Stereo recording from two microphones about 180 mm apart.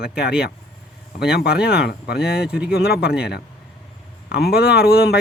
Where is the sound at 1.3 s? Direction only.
60° left (ahead or behind).